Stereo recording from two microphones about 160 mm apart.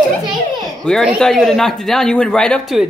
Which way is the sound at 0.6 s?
Centre (ahead or behind).